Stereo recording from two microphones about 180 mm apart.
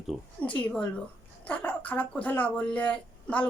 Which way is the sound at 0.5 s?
10° left (ahead or behind).